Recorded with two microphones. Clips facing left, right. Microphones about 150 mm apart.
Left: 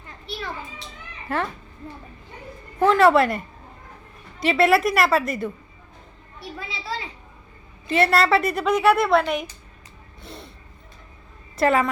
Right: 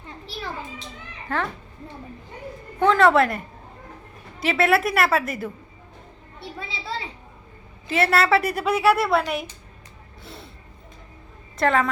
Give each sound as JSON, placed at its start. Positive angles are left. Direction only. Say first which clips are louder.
{"t": 1.3, "sound": "a woman's voice", "louder": "left 1 dB", "side_deg": 5}
{"t": 2.8, "sound": "a woman's voice", "louder": "left 1 dB", "side_deg": 5}
{"t": 6.4, "sound": "a woman's voice", "louder": "even", "side_deg": -25}
{"t": 7.9, "sound": "a woman's voice", "louder": "left 1 dB", "side_deg": 0}
{"t": 10.2, "sound": "vehicle", "louder": "left 2 dB", "side_deg": 0}
{"t": 11.5, "sound": "a woman's voice", "louder": "left 1 dB", "side_deg": 5}